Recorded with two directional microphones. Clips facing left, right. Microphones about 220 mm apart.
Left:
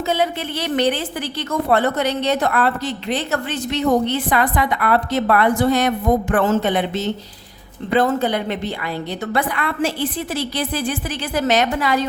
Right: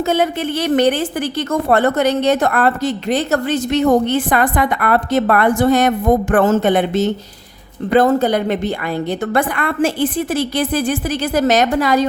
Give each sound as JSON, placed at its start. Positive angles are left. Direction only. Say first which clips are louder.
{"t": 0.1, "sound": "a woman's voice", "louder": "right 3 dB", "side_deg": -50}